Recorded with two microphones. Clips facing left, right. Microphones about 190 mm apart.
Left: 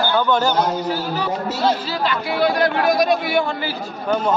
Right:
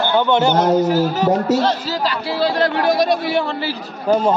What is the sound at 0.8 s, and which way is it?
Speech, 45° right (ahead or behind).